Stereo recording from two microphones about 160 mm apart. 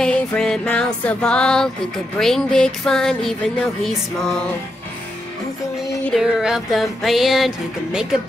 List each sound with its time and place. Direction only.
0.0 s music: 5° left (ahead or behind)
6.0 s music: centre (ahead or behind)